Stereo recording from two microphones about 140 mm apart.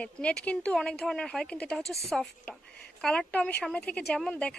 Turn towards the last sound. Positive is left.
turn(degrees=5)  # may be behind; listen again after turning